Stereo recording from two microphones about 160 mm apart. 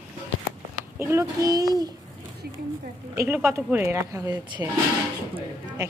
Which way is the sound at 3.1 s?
15° right (ahead or behind).